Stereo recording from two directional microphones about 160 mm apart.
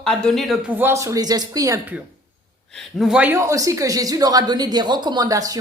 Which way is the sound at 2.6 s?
Centre (ahead or behind).